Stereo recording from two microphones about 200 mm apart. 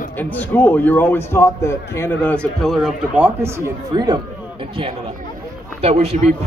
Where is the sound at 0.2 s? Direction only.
10° left (ahead or behind); by 3.5 s 10° right (ahead or behind).